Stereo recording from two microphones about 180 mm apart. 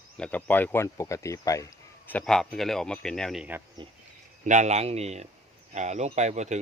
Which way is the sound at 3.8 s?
25° right (ahead or behind).